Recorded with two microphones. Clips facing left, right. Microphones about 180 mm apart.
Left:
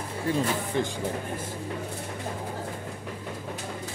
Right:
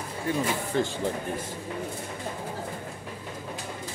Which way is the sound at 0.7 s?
15° left (ahead or behind).